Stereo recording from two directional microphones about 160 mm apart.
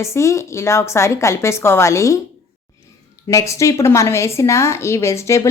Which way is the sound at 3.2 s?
20° left (ahead or behind).